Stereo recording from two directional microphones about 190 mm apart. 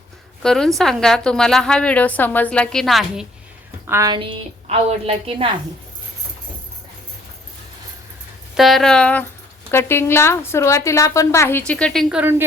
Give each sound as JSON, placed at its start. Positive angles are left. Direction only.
{"t": 0.4, "sound": "a woman's voice", "side_deg": 5}
{"t": 3.8, "sound": "a woman's voice", "side_deg": -15}
{"t": 8.5, "sound": "a woman's voice", "side_deg": 0}